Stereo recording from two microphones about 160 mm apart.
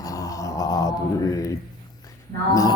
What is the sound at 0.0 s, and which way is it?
Mantra, 20° left (ahead or behind).